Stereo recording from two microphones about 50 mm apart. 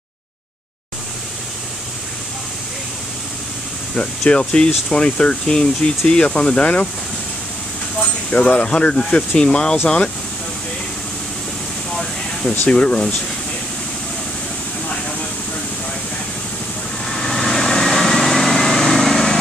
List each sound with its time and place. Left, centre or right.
3.9 s speech: centre
8.3 s speech: left
12.6 s speech: left
17.0 s vehicle: centre